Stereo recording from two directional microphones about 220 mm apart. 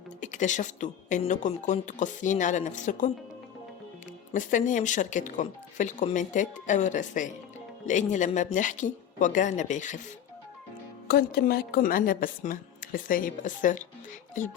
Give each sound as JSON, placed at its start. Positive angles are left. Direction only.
{"t": 0.2, "sound": "speech", "side_deg": 35}
{"t": 4.3, "sound": "speech", "side_deg": 35}
{"t": 11.1, "sound": "speech", "side_deg": 45}